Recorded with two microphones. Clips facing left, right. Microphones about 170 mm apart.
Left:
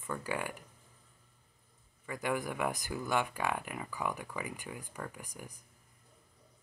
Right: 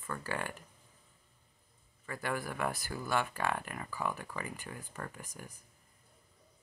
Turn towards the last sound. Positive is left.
turn(degrees=15)  # may be behind; listen again after turning